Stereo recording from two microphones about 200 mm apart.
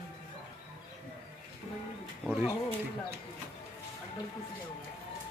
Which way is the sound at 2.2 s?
5° right (ahead or behind).